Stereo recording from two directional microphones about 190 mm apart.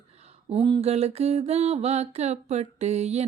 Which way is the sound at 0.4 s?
25° right (ahead or behind).